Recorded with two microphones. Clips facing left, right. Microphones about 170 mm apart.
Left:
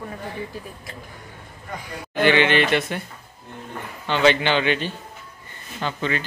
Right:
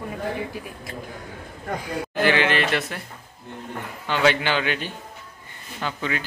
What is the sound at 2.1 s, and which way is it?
Speech, centre (ahead or behind).